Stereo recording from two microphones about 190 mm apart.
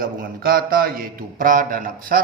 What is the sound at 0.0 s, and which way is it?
A man's voice, 50° right (ahead or behind).